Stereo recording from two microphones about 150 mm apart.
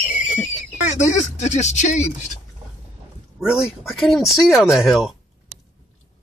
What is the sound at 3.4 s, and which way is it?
Speech, 5° right (ahead or behind).